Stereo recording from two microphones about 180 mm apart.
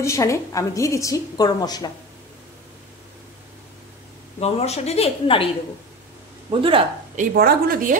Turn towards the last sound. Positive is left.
turn(degrees=-55)  # may be behind; listen again after turning